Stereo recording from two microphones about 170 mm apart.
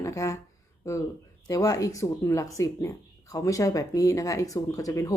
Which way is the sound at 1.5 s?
20° left (ahead or behind).